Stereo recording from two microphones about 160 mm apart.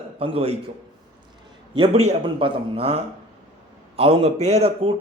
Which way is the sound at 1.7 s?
40° right (ahead or behind).